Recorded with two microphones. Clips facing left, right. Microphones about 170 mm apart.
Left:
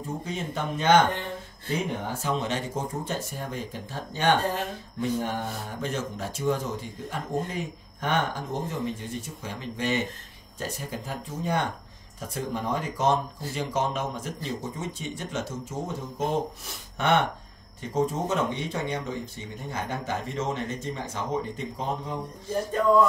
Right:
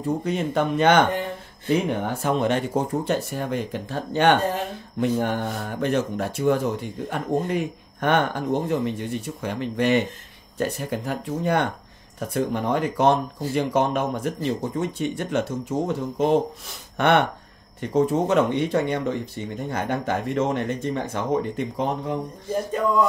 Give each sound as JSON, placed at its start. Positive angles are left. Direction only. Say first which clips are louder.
{"t": 0.2, "sound": "speech", "louder": "right 8 dB", "side_deg": -65}
{"t": 2.0, "sound": "speech", "louder": "right 6 dB", "side_deg": -60}